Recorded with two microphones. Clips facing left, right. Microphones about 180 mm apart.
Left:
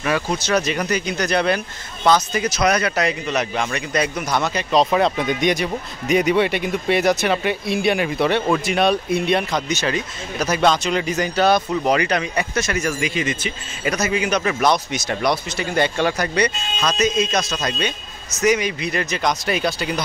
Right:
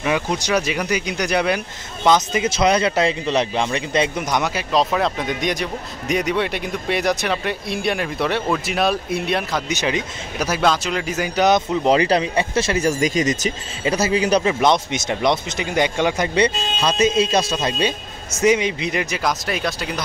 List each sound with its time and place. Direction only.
0.0 s speech: 15° right (ahead or behind); by 9.6 s centre (ahead or behind)
9.7 s speech: 15° right (ahead or behind); by 13.5 s 40° right (ahead or behind)
13.8 s a man's voice: 30° right (ahead or behind)
14.5 s speech: 20° right (ahead or behind); by 20.0 s centre (ahead or behind)